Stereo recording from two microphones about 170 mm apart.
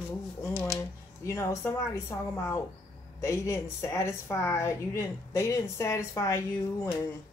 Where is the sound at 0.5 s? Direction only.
20° right (ahead or behind).